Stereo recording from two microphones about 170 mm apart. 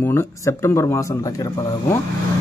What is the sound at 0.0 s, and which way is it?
Speech, 15° left (ahead or behind).